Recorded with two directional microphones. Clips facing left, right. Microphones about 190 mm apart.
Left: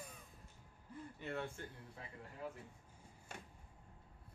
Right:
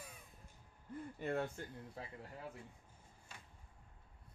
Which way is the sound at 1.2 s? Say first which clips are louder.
Right 5 dB; 45° right (ahead or behind).